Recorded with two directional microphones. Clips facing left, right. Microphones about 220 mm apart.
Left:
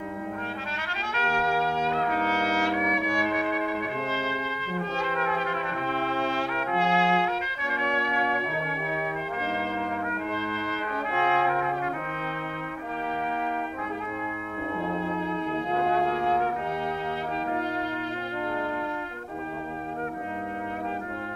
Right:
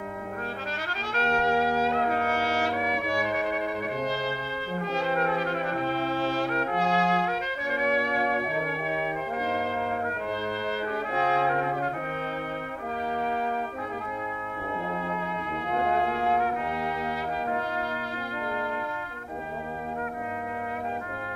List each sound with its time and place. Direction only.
2.0 s trumpet: 35° right (ahead or behind)
6.7 s music: 40° right (ahead or behind)
10.7 s brass instrument: 35° right (ahead or behind)